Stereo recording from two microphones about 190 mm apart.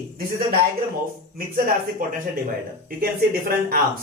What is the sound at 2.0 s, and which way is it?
Speech, 45° right (ahead or behind).